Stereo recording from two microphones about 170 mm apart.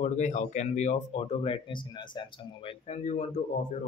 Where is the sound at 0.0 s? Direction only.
45° left (ahead or behind); by 2.7 s 30° left (ahead or behind).